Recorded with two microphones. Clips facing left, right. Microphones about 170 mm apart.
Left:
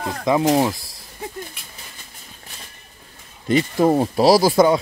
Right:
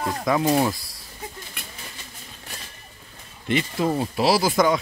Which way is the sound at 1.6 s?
65° right (ahead or behind).